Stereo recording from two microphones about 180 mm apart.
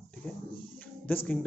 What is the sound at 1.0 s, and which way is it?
Speech, 5° left (ahead or behind).